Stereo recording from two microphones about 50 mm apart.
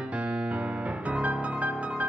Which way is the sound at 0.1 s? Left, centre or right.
Right.